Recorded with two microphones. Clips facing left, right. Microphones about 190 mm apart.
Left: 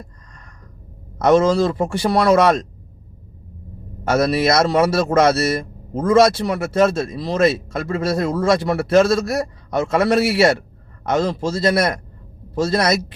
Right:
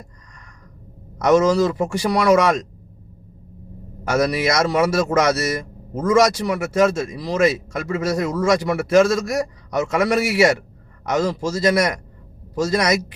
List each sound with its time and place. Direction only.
1.2 s a man's voice: 30° left (ahead or behind)
4.0 s a man's voice: 30° left (ahead or behind)